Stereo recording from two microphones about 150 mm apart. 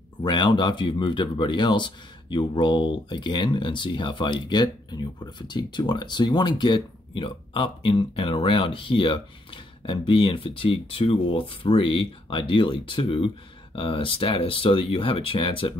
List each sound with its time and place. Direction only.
0.2 s speech: 30° left (ahead or behind)